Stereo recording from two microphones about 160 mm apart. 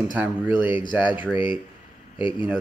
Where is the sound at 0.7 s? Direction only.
30° left (ahead or behind).